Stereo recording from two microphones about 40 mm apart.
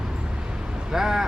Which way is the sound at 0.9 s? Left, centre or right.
Centre.